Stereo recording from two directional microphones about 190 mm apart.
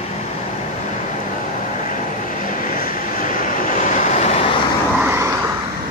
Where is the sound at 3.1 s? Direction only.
45° left (ahead or behind).